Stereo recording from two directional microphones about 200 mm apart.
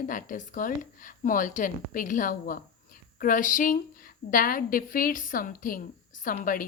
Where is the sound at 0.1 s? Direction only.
40° left (ahead or behind).